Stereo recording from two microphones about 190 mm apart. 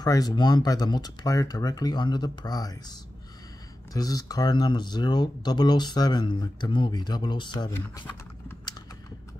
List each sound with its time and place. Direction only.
0.0 s speech: 20° left (ahead or behind)